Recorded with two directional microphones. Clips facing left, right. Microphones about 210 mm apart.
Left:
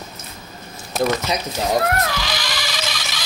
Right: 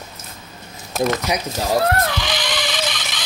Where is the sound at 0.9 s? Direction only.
Centre (ahead or behind).